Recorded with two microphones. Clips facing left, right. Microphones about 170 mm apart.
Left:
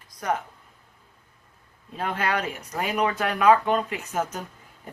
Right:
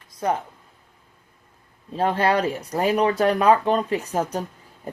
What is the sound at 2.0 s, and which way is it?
Speech, 35° right (ahead or behind).